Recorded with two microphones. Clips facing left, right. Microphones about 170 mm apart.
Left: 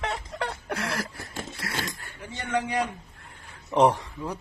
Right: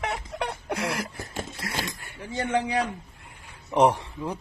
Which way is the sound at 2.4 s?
30° right (ahead or behind).